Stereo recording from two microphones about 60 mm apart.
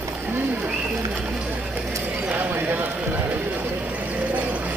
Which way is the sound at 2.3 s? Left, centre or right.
Right.